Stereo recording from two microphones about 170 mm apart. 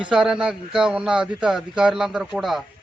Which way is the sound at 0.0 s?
5° right (ahead or behind).